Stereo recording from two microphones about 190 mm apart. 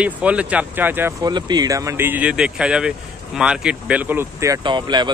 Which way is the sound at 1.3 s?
20° right (ahead or behind).